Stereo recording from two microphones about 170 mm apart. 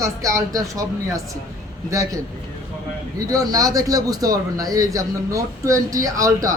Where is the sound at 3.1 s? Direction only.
20° right (ahead or behind).